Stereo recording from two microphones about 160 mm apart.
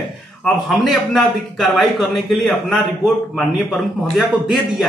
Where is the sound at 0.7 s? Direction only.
Centre (ahead or behind).